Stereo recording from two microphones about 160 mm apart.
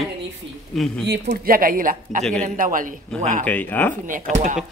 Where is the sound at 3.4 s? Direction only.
10° left (ahead or behind).